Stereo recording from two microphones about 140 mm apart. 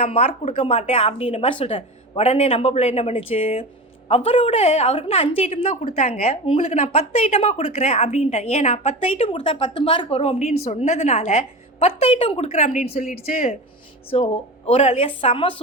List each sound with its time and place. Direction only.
0.0 s a woman's voice: 45° left (ahead or behind)
12.5 s a woman's voice: 60° left (ahead or behind); by 15.6 s 40° left (ahead or behind)